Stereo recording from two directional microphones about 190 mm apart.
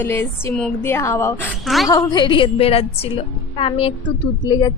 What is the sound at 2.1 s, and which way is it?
A woman's voice, 25° left (ahead or behind).